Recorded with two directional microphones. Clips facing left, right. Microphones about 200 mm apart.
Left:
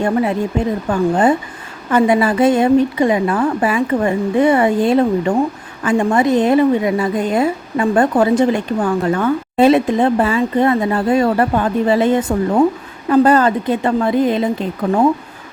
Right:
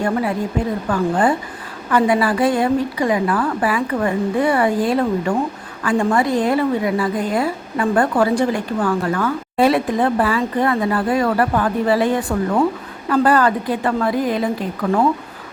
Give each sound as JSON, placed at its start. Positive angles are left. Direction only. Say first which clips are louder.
{"t": 0.0, "sound": "a woman's voice", "louder": "left 3 dB", "side_deg": 25}